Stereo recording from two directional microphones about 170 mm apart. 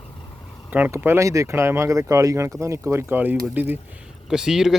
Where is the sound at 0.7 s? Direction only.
10° right (ahead or behind).